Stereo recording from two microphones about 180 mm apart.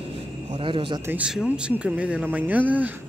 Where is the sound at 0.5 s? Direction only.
30° right (ahead or behind).